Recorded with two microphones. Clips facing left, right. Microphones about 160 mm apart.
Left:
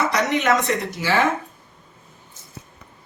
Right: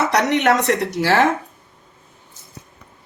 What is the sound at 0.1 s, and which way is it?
Speech, 70° right (ahead or behind).